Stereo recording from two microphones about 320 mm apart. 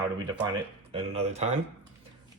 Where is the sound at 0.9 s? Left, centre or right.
Centre.